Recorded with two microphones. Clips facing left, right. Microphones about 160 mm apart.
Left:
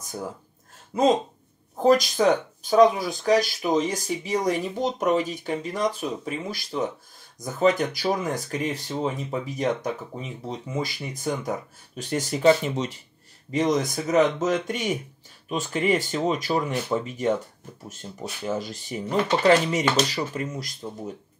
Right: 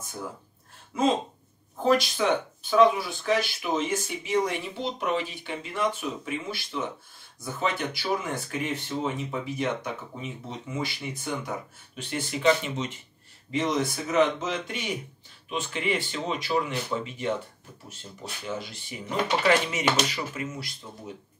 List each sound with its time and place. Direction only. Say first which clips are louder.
0.9 s speech: left 4 dB; 40° left (ahead or behind)
18.4 s speech: left 6 dB; 40° left (ahead or behind)